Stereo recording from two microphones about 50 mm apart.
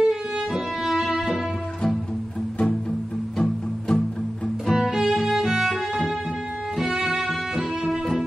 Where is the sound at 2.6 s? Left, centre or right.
Centre.